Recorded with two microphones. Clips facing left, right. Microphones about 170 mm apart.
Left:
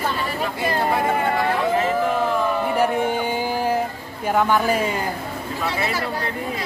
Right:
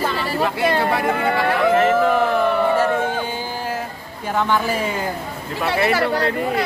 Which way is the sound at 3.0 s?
15° left (ahead or behind).